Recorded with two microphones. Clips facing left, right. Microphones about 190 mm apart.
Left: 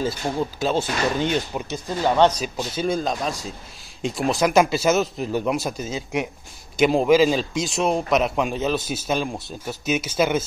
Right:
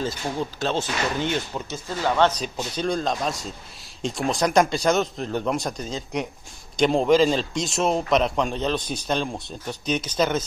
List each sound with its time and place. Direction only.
0.6 s speech: 10° left (ahead or behind)
2.4 s a man's voice: 5° left (ahead or behind)